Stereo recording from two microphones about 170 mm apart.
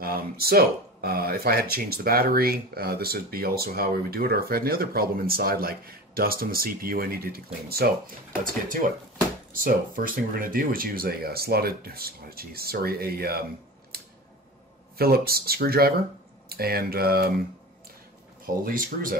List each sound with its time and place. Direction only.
0.0 s speech: 65° right (ahead or behind)
13.9 s scissors: 65° right (ahead or behind)
15.0 s speech: 65° right (ahead or behind)
18.6 s speech: 55° right (ahead or behind)